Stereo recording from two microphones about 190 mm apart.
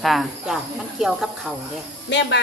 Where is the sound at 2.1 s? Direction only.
70° left (ahead or behind).